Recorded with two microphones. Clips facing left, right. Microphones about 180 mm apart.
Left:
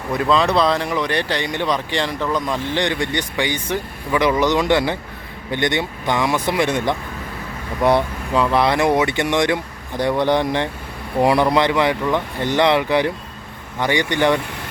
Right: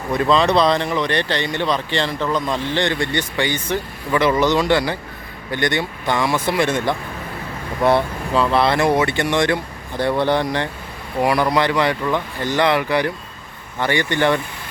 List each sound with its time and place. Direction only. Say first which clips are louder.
0.2 s speech: right 1 dB; 5° left (ahead or behind)